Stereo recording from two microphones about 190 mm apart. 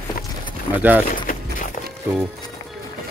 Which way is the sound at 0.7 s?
10° right (ahead or behind).